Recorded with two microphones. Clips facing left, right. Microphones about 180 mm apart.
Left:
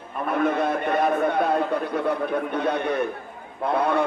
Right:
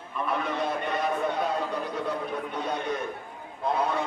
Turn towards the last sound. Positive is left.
turn(degrees=60)  # may be behind; listen again after turning